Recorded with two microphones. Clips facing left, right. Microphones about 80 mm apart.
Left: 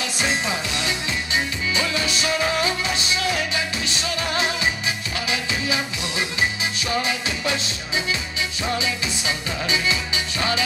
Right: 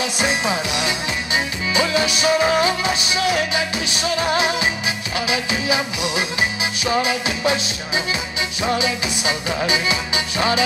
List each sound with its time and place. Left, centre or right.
0.0 s music: centre